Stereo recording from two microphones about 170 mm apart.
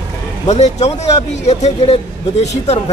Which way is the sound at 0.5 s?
40° left (ahead or behind).